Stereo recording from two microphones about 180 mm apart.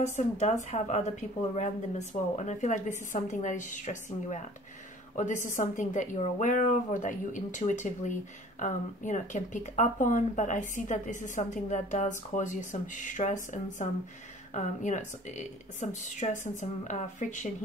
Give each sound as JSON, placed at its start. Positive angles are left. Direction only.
{"t": 0.0, "sound": "a woman's voice", "side_deg": 40}
{"t": 5.4, "sound": "a woman's voice", "side_deg": 45}